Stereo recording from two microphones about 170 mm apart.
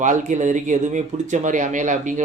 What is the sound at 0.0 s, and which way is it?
Speech, 45° right (ahead or behind).